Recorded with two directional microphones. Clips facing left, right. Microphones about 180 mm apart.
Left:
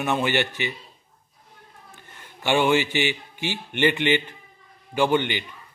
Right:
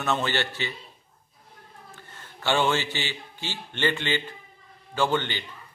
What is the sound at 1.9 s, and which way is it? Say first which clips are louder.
A man's voice: even; 15° left (ahead or behind).